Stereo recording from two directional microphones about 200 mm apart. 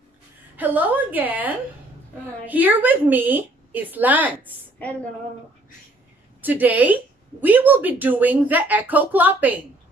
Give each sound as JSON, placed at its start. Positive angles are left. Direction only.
{"t": 0.6, "sound": "a woman's voice", "side_deg": -10}
{"t": 6.4, "sound": "a woman's voice", "side_deg": -10}